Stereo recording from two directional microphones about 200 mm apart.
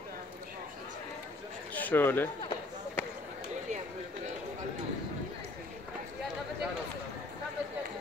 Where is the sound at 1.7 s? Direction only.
10° left (ahead or behind).